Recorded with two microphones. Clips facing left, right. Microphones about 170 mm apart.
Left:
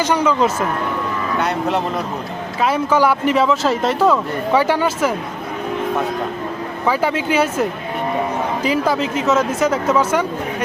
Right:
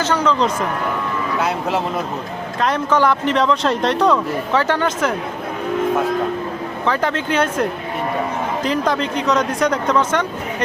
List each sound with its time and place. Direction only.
0.0 s speech: 10° left (ahead or behind)
6.8 s speech: 10° left (ahead or behind)